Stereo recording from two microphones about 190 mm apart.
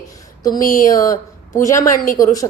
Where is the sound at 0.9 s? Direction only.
15° left (ahead or behind).